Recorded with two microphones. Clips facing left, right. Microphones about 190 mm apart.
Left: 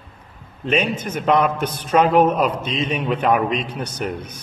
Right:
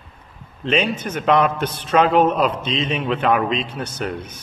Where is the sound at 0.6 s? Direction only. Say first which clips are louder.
Even; 10° left (ahead or behind).